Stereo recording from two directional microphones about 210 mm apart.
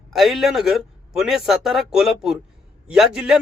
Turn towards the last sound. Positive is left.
turn(degrees=-5)  # may be behind; listen again after turning